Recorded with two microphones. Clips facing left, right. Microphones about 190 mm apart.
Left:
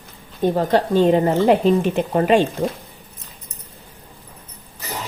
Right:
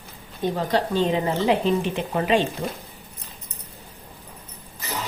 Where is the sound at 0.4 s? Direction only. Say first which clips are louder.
Left 6 dB; 45° left (ahead or behind).